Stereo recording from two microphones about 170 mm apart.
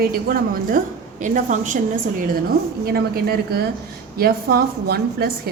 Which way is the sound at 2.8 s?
65° right (ahead or behind).